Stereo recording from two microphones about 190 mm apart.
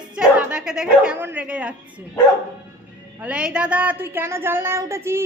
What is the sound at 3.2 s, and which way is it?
Speech, 5° right (ahead or behind).